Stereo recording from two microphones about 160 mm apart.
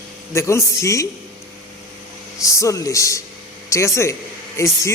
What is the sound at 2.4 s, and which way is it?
A man's voice, 20° left (ahead or behind).